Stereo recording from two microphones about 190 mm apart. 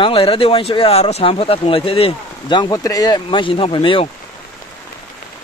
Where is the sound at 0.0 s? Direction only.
30° left (ahead or behind).